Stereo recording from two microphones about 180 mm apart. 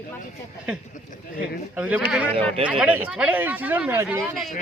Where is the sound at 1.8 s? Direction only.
5° right (ahead or behind).